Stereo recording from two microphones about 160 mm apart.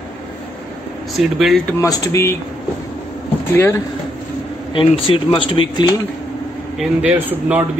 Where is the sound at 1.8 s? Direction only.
20° left (ahead or behind).